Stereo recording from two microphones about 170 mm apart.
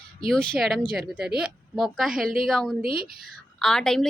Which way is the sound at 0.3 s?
Centre (ahead or behind).